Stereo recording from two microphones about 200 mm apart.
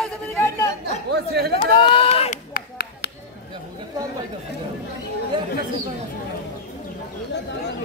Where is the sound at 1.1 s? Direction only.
55° right (ahead or behind).